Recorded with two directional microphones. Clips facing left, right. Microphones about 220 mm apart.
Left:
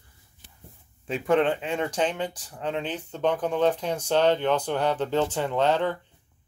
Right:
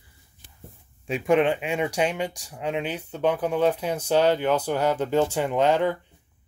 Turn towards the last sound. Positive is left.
turn(degrees=-10)  # may be behind; listen again after turning